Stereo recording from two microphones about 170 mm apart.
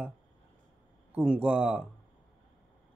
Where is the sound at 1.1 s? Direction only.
5° right (ahead or behind).